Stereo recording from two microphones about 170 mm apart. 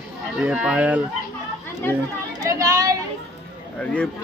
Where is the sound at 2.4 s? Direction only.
20° right (ahead or behind).